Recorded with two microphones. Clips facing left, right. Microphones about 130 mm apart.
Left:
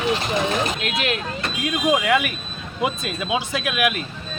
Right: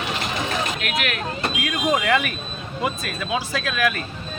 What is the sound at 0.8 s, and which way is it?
Speech, 30° left (ahead or behind).